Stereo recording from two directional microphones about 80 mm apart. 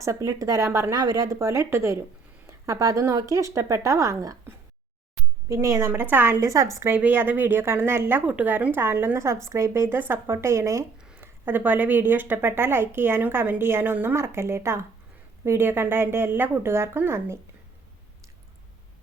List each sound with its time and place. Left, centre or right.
0.0 s a woman's voice: right
0.9 s a woman's voice: right
5.5 s a woman's voice: right
5.9 s a woman's voice: right
6.4 s a woman's voice: right
6.9 s a woman's voice: right
8.2 s a woman's voice: centre